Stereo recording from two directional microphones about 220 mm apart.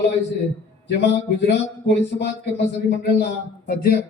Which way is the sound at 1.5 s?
50° left (ahead or behind).